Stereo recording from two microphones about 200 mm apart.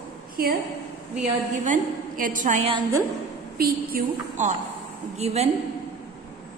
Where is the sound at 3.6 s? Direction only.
45° right (ahead or behind).